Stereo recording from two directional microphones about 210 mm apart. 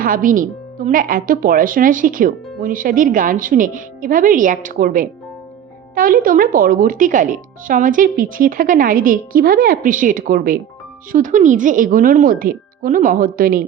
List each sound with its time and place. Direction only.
0.0 s speech: 40° right (ahead or behind)